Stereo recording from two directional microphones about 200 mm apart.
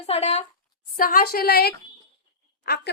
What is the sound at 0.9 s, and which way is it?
A woman's voice, 45° left (ahead or behind).